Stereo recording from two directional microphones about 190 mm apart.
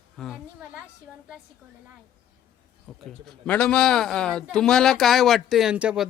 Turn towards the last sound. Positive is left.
turn(degrees=-5)  # may be behind; listen again after turning